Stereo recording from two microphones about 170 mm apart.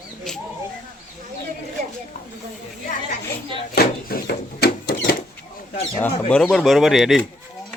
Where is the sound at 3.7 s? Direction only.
70° left (ahead or behind).